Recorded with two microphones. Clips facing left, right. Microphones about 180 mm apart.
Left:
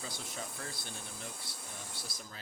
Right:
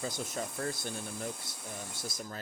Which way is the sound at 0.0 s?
45° right (ahead or behind).